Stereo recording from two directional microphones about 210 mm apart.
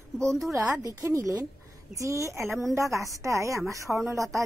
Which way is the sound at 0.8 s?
15° right (ahead or behind).